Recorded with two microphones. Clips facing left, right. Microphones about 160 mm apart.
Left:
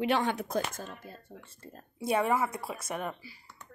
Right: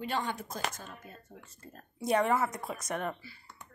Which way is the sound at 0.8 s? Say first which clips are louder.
Left 4 dB; 35° left (ahead or behind).